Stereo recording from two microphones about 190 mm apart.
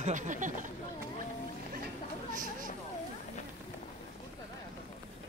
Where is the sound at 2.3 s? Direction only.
45° right (ahead or behind).